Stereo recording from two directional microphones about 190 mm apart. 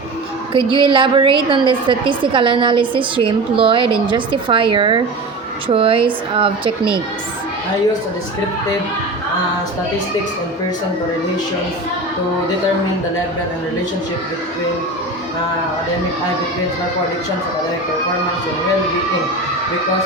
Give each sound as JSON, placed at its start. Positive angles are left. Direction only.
{"t": 0.5, "sound": "a woman's voice", "side_deg": -25}